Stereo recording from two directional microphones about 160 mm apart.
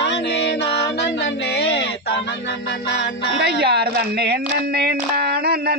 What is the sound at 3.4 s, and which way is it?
A woman's voice, 85° right.